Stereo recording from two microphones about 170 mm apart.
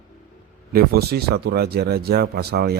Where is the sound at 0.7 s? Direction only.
65° right (ahead or behind).